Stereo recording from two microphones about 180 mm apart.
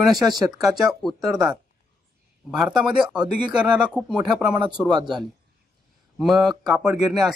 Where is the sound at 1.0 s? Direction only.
Centre (ahead or behind).